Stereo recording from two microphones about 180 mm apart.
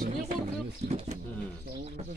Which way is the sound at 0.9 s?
35° right (ahead or behind).